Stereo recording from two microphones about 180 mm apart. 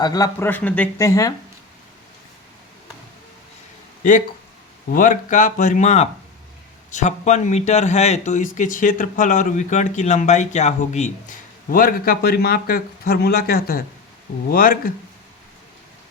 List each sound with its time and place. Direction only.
0.0 s speech: 20° left (ahead or behind)
4.9 s speech: 45° left (ahead or behind)